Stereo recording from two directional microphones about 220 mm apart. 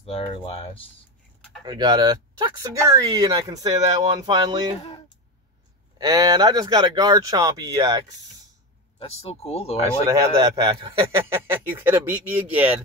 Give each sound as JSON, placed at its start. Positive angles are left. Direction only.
{"t": 0.0, "sound": "speech", "side_deg": 25}
{"t": 1.7, "sound": "speech", "side_deg": -20}
{"t": 5.9, "sound": "speech", "side_deg": -15}
{"t": 9.0, "sound": "speech", "side_deg": 25}
{"t": 9.8, "sound": "speech", "side_deg": -15}